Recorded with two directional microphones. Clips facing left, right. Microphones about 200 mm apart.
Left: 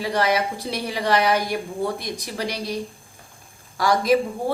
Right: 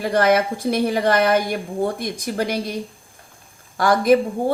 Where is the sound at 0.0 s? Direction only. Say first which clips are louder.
Right 5 dB; 50° right (ahead or behind).